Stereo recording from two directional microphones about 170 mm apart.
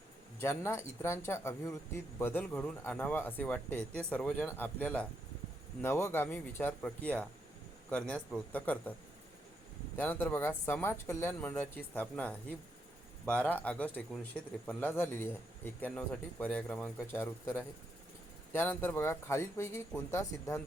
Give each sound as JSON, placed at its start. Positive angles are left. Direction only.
{"t": 0.3, "sound": "speech", "side_deg": 15}
{"t": 10.0, "sound": "speech", "side_deg": 10}